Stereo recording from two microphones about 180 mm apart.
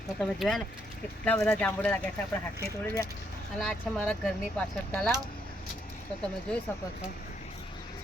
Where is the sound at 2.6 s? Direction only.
20° left (ahead or behind).